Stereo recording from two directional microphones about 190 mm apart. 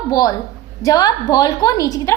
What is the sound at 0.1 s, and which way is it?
A woman's voice, 20° left (ahead or behind).